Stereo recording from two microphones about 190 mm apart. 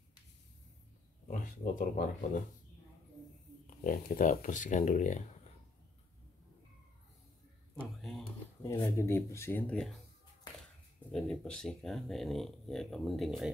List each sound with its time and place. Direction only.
1.2 s speech: 40° left (ahead or behind)
3.8 s speech: 45° left (ahead or behind)
8.7 s speech: 20° left (ahead or behind); by 9.9 s 5° left (ahead or behind)
11.1 s speech: 5° left (ahead or behind)